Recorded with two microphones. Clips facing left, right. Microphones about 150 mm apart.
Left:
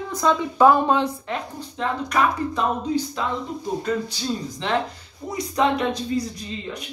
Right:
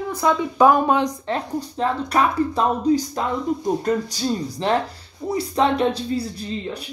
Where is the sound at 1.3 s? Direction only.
35° right (ahead or behind).